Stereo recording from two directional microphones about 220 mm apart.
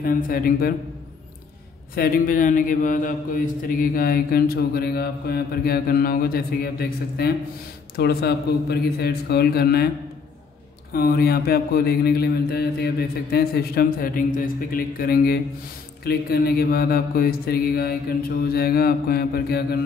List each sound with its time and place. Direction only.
0.0 s speech: 40° left (ahead or behind)
2.0 s speech: 40° left (ahead or behind)
10.9 s speech: 40° left (ahead or behind)